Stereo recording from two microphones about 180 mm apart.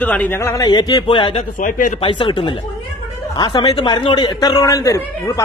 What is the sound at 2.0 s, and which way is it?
Speech, 25° left (ahead or behind).